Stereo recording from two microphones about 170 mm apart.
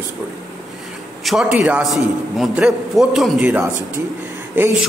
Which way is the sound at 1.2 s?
Centre (ahead or behind).